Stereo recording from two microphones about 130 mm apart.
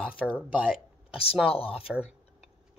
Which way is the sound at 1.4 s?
45° left (ahead or behind).